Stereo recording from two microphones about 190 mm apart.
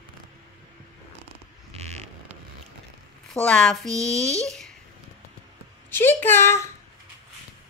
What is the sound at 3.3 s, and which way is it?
A woman's voice, 5° left (ahead or behind).